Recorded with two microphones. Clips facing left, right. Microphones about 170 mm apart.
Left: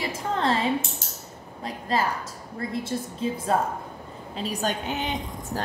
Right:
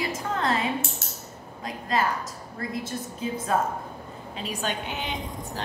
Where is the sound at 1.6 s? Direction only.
30° left (ahead or behind).